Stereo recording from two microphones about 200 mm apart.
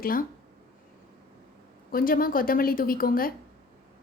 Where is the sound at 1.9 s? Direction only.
45° left (ahead or behind).